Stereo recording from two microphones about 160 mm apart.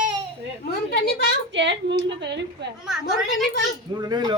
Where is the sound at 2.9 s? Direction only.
5° right (ahead or behind).